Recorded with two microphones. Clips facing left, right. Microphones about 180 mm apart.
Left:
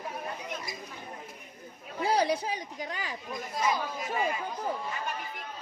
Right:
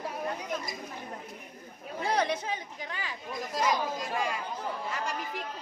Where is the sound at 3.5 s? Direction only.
90° right.